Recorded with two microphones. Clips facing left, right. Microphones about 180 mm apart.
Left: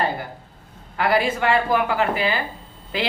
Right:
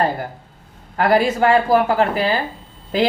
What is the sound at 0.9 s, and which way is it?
A woman's voice, 40° right (ahead or behind).